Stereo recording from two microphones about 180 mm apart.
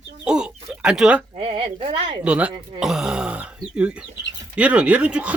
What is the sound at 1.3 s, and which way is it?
Speech, 35° right (ahead or behind).